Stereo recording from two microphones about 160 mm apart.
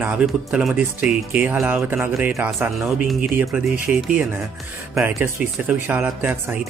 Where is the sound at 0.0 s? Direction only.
5° right (ahead or behind).